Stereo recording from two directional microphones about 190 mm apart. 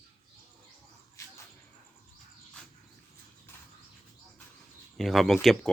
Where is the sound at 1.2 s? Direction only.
15° left (ahead or behind).